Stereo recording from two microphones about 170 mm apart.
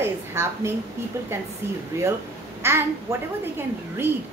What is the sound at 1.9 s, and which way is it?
A woman's voice, 15° right (ahead or behind).